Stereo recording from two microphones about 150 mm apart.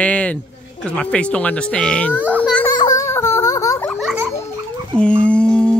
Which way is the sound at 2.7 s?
20° left (ahead or behind).